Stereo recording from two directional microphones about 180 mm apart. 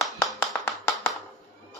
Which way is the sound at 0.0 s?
5° left (ahead or behind).